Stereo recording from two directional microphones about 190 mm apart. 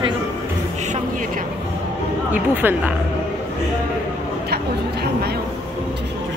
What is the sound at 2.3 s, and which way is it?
Speech, 10° right (ahead or behind).